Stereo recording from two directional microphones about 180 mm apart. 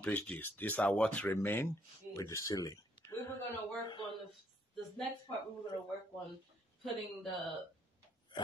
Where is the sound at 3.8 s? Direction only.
25° left (ahead or behind).